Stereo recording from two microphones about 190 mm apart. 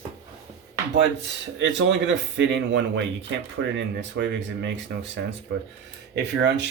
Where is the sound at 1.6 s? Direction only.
70° right (ahead or behind).